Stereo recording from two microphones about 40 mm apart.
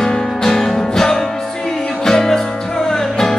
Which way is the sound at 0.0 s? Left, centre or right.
Centre.